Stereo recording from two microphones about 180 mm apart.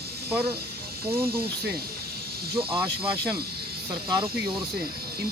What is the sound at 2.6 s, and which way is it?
Speech, 30° right (ahead or behind).